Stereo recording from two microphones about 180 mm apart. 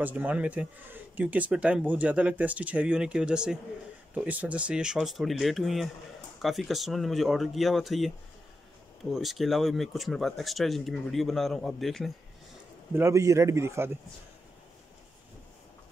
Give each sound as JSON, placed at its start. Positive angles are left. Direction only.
{"t": 0.0, "sound": "speech", "side_deg": -10}
{"t": 9.1, "sound": "speech", "side_deg": 0}
{"t": 12.9, "sound": "speech", "side_deg": -15}